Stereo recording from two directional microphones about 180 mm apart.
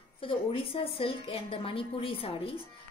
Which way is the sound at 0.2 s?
30° left (ahead or behind).